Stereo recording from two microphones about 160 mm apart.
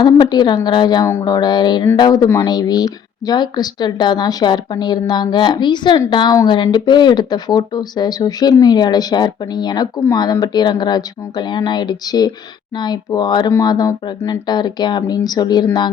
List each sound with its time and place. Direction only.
0.0 s speech: 25° left (ahead or behind)